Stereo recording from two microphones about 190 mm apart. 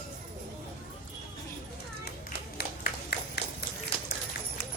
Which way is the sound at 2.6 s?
55° left (ahead or behind).